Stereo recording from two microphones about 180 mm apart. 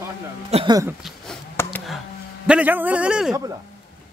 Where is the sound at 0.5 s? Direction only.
35° right (ahead or behind).